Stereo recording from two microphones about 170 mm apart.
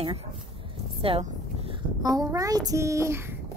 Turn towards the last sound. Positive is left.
turn(degrees=-15)  # may be behind; listen again after turning